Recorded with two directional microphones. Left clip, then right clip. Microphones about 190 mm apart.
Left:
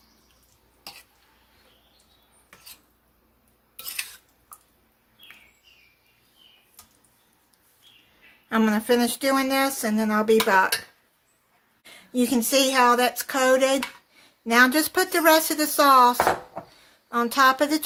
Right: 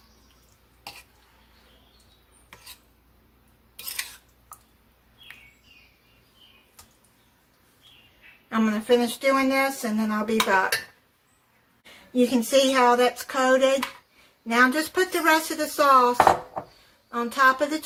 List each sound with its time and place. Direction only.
8.4 s speech: 55° left (ahead or behind)
11.8 s speech: 55° left (ahead or behind)